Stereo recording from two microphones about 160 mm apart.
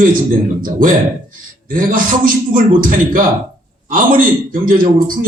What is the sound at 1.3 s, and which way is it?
A man's voice, 60° right (ahead or behind).